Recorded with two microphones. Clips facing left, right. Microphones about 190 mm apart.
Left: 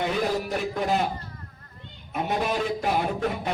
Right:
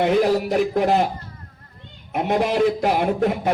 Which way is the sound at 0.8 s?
70° right (ahead or behind).